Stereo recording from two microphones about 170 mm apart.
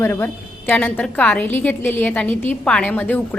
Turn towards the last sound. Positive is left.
turn(degrees=10)  # may be behind; listen again after turning